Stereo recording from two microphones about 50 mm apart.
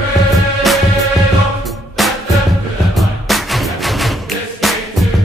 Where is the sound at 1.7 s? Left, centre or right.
Centre.